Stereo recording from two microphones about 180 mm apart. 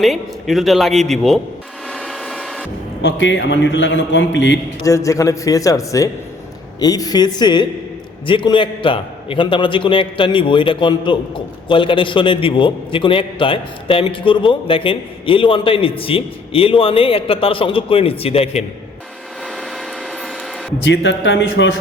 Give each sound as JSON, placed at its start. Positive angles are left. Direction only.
{"t": 0.0, "sound": "a man's voice", "side_deg": 0}
{"t": 1.9, "sound": "a sound", "side_deg": 0}
{"t": 3.0, "sound": "a man's voice", "side_deg": 85}
{"t": 4.8, "sound": "a man's voice", "side_deg": 15}
{"t": 20.8, "sound": "a man's voice", "side_deg": 85}